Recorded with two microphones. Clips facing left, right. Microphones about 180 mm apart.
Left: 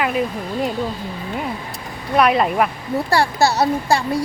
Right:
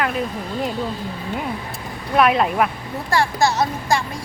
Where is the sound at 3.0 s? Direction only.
35° left (ahead or behind).